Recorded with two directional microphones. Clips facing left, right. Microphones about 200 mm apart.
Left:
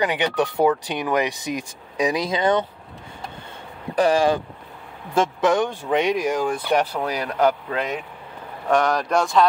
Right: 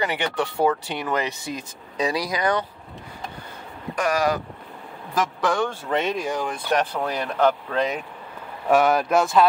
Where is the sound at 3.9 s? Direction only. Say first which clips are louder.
Left 4 dB; 30° left (ahead or behind); by 8.0 s 5° left (ahead or behind).